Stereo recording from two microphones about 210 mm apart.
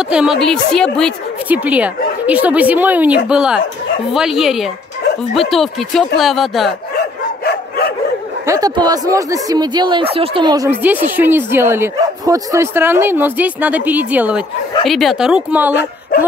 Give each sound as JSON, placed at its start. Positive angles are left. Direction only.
{"t": 0.1, "sound": "speech", "side_deg": -5}
{"t": 1.5, "sound": "speech", "side_deg": -5}
{"t": 7.4, "sound": "dog", "side_deg": 50}
{"t": 8.5, "sound": "speech", "side_deg": -15}